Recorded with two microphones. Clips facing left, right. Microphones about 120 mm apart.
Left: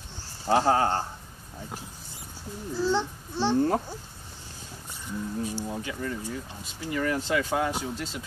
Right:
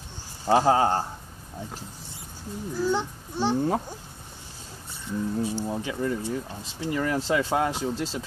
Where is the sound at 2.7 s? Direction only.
15° right (ahead or behind).